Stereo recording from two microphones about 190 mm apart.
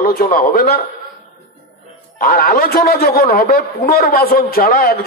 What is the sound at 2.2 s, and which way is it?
A man's voice, 50° left (ahead or behind).